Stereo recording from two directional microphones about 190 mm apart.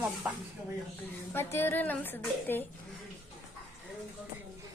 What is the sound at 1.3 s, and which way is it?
A woman's voice, 10° left (ahead or behind).